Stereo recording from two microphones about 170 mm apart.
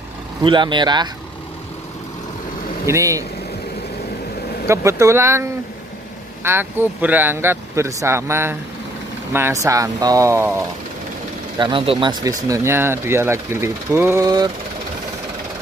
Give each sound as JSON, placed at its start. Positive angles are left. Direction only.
{"t": 0.4, "sound": "speech", "side_deg": -30}
{"t": 2.9, "sound": "speech", "side_deg": -20}
{"t": 4.6, "sound": "speech", "side_deg": -15}
{"t": 11.5, "sound": "speech", "side_deg": -30}